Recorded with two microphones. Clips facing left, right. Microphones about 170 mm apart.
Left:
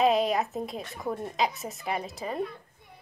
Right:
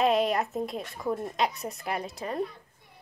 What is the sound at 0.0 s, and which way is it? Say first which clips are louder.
A woman's voice: left 1 dB; centre (ahead or behind).